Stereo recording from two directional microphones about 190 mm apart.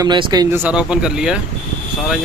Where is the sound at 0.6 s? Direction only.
5° right (ahead or behind).